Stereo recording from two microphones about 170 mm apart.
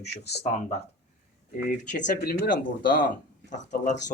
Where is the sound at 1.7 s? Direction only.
50° left (ahead or behind).